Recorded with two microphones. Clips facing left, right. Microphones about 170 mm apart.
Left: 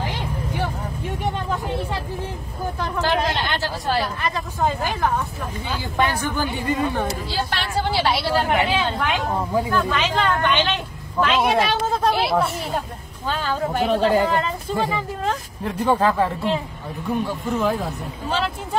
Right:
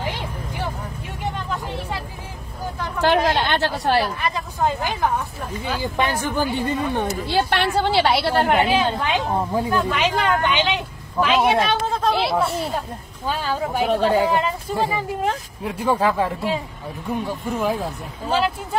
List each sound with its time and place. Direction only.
3.0 s speech: 60° right (ahead or behind)
4.2 s a woman's voice: 15° right (ahead or behind)
7.2 s speech: 65° right (ahead or behind)
8.6 s a woman's voice: 20° right (ahead or behind)
11.1 s a woman's voice: 5° right (ahead or behind)